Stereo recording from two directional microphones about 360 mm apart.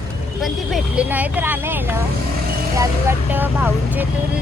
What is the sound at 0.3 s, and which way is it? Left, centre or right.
Speech, centre.